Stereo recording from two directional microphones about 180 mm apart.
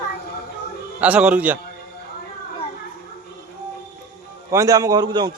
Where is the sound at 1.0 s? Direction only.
5° right (ahead or behind).